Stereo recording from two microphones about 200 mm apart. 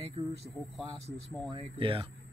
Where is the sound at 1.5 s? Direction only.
25° right (ahead or behind).